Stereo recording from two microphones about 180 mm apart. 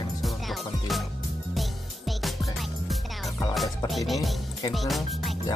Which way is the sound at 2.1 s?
Centre (ahead or behind).